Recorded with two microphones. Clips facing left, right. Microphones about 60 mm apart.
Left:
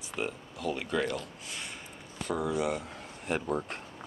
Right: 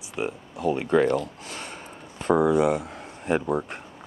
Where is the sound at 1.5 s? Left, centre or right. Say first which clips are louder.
Right 5 dB; right.